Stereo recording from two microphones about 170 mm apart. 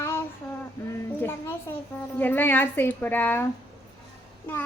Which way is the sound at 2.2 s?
10° left (ahead or behind).